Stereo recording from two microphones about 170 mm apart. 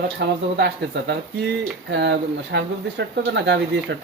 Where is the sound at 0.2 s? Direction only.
85° right.